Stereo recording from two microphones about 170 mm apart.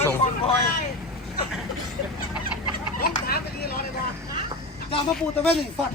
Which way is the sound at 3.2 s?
65° left (ahead or behind).